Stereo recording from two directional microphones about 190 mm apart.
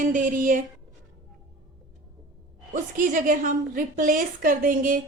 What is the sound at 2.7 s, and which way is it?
A woman's voice, 40° right (ahead or behind).